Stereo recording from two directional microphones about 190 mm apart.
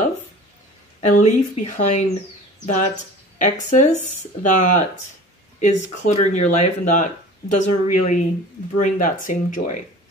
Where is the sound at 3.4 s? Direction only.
40° left (ahead or behind).